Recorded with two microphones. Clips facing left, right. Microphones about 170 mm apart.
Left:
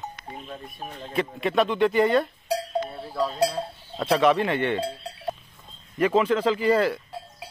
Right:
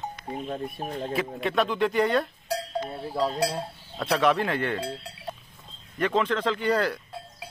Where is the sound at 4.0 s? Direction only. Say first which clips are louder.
Left 3 dB; centre (ahead or behind).